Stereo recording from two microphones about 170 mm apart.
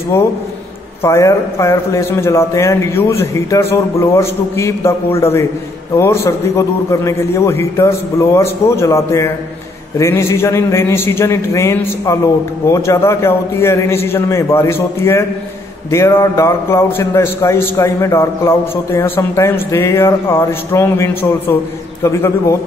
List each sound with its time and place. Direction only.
0.1 s a man's voice: 15° left (ahead or behind)